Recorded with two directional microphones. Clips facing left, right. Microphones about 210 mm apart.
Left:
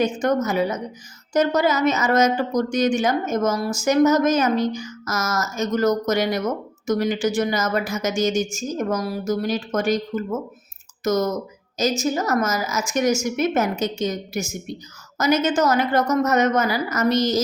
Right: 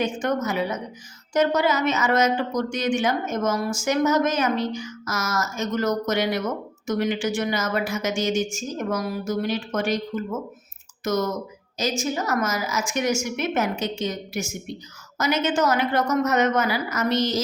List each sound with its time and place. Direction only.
0.0 s speech: 40° left (ahead or behind)